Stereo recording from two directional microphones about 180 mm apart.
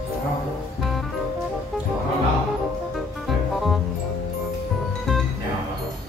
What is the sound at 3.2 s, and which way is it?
Music, centre (ahead or behind).